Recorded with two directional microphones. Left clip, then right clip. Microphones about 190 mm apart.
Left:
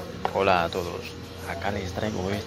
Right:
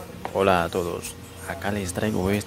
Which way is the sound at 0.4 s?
50° right (ahead or behind).